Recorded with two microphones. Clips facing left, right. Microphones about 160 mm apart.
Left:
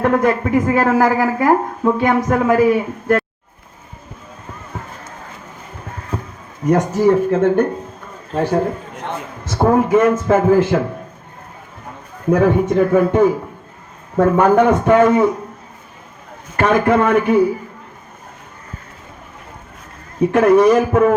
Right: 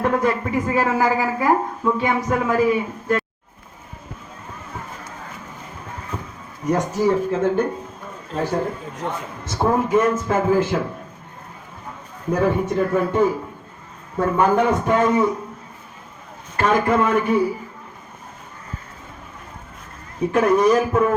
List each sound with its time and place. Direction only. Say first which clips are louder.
0.0 s speech: left 5 dB; 55° left (ahead or behind)
6.7 s a man's voice: left 5 dB; 50° left (ahead or behind)
12.3 s speech: left 6 dB; 55° left (ahead or behind)
14.2 s speech: left 6 dB; 55° left (ahead or behind)
16.6 s speech: left 4 dB; 60° left (ahead or behind)
20.3 s speech: left 5 dB; 60° left (ahead or behind)